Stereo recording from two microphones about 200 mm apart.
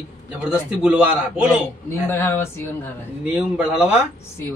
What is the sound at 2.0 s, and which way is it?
Speech, 10° left (ahead or behind).